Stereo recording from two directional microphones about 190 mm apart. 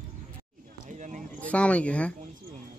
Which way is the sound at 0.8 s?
40° right (ahead or behind).